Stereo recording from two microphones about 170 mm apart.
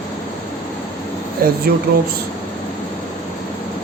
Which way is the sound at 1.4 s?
55° right (ahead or behind).